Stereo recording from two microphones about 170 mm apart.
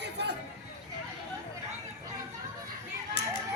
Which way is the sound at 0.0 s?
85° right.